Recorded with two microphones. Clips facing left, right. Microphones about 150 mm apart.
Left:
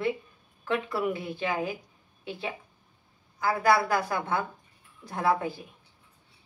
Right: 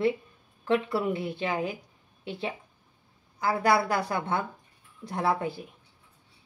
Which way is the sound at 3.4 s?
25° right (ahead or behind).